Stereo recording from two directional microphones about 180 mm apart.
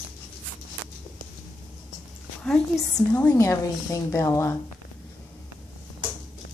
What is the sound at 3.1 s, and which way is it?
A woman's voice, 15° left (ahead or behind).